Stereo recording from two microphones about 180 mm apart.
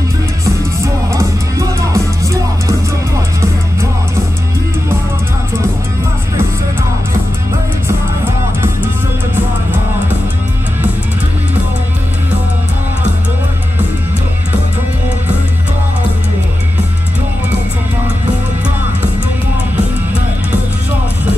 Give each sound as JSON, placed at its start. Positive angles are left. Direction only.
{"t": 0.5, "sound": "music", "side_deg": -15}